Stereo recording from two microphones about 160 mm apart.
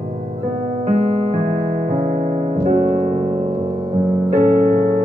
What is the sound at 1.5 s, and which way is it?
Music, 50° right (ahead or behind).